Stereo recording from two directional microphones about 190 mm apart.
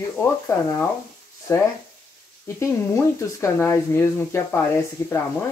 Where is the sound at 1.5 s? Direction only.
15° left (ahead or behind).